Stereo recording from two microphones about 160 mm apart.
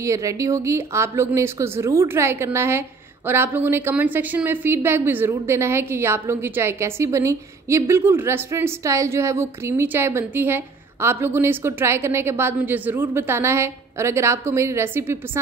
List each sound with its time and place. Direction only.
0.0 s a woman's voice: 20° right (ahead or behind)